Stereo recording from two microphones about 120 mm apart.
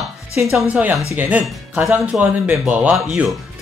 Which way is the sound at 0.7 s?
15° right (ahead or behind).